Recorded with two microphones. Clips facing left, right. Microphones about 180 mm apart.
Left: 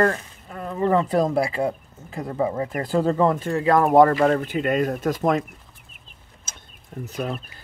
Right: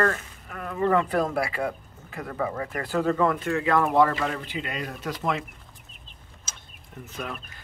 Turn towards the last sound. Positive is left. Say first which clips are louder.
# left 7 dB
turn(degrees=35)  # may be behind; listen again after turning